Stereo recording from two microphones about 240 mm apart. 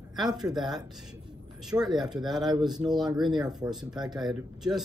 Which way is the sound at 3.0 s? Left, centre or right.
Centre.